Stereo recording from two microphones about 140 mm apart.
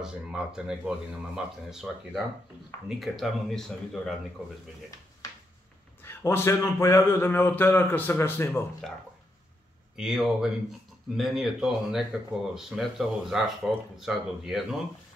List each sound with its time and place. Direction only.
0.0 s speech: 5° right (ahead or behind)
6.0 s a man's voice: 20° left (ahead or behind)
9.9 s speech: 5° right (ahead or behind)